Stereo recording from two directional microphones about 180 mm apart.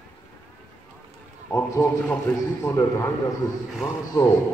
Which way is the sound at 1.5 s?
10° left (ahead or behind).